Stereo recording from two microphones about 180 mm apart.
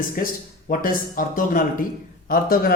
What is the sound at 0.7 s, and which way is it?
Speech, 50° left (ahead or behind).